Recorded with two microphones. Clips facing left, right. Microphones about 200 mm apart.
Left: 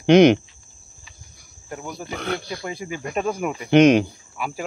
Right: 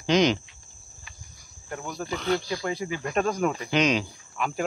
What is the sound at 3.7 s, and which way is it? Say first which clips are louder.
Speech: left 13 dB; 55° left (ahead or behind).